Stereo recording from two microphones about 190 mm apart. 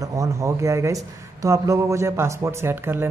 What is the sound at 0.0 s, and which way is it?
Speech, 15° right (ahead or behind).